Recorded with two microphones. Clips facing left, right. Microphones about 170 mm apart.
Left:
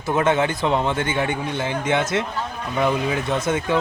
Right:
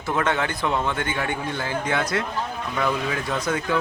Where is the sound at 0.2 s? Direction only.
20° left (ahead or behind).